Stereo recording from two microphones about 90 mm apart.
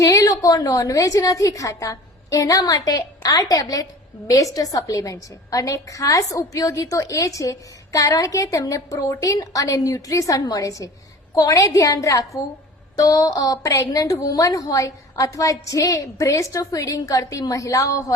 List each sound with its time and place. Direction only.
0.0 s a woman's voice: 40° left (ahead or behind)